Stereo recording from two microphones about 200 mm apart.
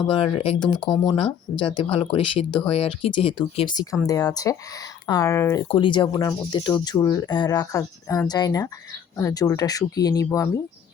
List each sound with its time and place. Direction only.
0.1 s speech: 25° left (ahead or behind)
5.6 s speech: 25° left (ahead or behind)